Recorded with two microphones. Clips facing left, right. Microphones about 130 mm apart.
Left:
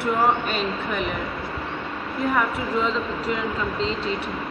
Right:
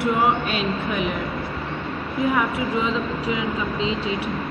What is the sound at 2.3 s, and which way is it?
Speech, 10° right (ahead or behind).